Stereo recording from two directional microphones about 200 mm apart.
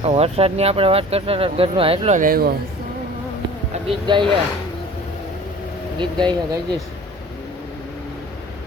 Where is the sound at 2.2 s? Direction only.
45° right (ahead or behind).